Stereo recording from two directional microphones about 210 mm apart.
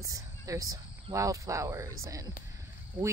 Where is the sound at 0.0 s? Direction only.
15° right (ahead or behind).